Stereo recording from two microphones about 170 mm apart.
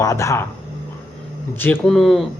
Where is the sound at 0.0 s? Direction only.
20° left (ahead or behind).